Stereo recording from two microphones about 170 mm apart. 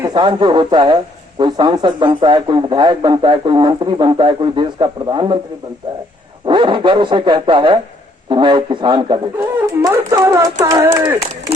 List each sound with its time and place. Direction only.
0.0 s speech: 25° right (ahead or behind)
6.4 s speech: 25° right (ahead or behind)
9.6 s speech: 15° right (ahead or behind)